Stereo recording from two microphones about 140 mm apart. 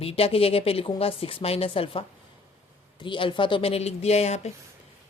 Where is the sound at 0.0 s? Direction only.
45° left (ahead or behind).